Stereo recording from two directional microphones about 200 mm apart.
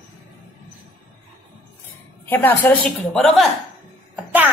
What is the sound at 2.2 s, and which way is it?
A woman's voice, 10° left (ahead or behind).